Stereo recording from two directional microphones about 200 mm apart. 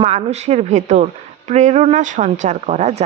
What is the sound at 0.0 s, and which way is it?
A woman's voice, 35° right (ahead or behind).